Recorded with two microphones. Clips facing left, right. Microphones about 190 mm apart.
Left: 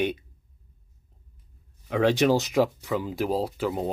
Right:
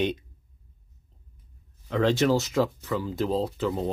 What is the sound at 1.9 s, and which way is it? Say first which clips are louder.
Speech: left 1 dB; 15° left (ahead or behind).